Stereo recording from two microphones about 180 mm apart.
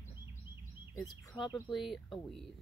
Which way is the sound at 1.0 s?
Centre (ahead or behind).